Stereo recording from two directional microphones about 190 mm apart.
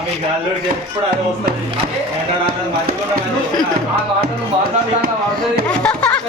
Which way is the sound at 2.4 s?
50° right (ahead or behind).